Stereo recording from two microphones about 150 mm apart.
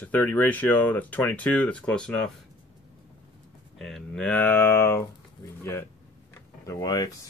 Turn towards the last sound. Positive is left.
turn(degrees=25)  # may be behind; listen again after turning